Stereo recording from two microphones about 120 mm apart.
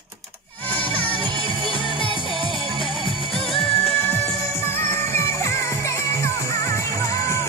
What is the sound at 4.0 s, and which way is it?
Music, 20° left (ahead or behind).